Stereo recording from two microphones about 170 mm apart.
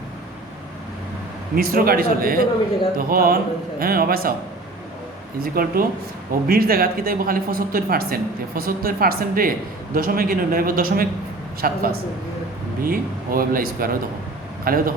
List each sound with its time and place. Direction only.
1.5 s speech: 60° right (ahead or behind)
5.4 s speech: 60° right (ahead or behind)